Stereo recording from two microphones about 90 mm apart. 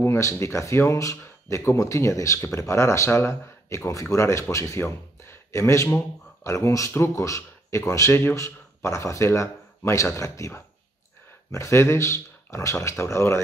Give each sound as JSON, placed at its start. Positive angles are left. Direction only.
{"t": 0.0, "sound": "speech", "side_deg": 35}